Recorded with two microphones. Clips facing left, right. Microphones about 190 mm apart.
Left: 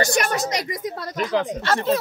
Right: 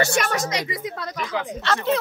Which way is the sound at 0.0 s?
40° left (ahead or behind).